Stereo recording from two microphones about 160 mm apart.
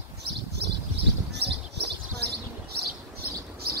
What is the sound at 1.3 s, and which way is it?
Bird, 90° right.